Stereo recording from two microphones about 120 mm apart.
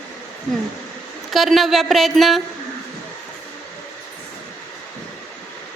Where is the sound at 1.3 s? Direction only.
Centre (ahead or behind).